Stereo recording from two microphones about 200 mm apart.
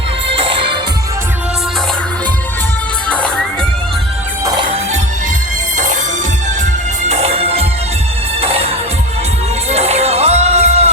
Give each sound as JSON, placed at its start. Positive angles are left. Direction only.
{"t": 0.3, "sound": "music", "side_deg": -25}
{"t": 3.1, "sound": "music", "side_deg": 5}
{"t": 5.7, "sound": "music", "side_deg": -40}
{"t": 7.1, "sound": "music", "side_deg": -30}